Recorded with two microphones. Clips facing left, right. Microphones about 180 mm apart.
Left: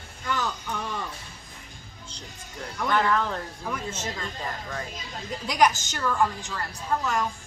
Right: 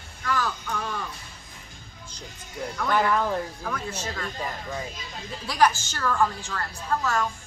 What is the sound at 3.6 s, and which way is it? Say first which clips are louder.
Speech: even; 20° left (ahead or behind).